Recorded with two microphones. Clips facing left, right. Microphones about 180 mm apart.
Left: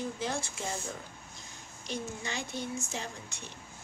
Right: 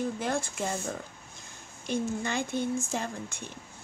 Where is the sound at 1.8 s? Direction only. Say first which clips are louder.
Right 7 dB; 55° right (ahead or behind).